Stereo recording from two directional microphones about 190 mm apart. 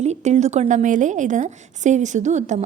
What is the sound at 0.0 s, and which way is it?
A woman's voice, 35° right (ahead or behind).